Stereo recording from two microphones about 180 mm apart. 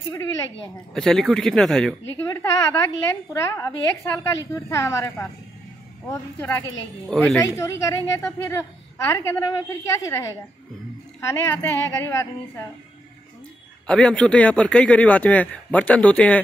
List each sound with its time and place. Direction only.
0.1 s speech: 15° left (ahead or behind)
0.9 s speech: centre (ahead or behind)
2.1 s speech: 15° left (ahead or behind)
13.8 s speech: 5° left (ahead or behind)